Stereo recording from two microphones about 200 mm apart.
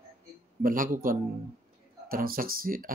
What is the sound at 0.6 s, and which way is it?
Speech, 45° right (ahead or behind).